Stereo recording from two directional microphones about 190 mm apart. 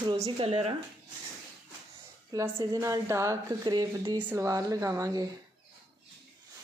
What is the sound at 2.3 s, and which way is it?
A woman's voice, 15° right (ahead or behind).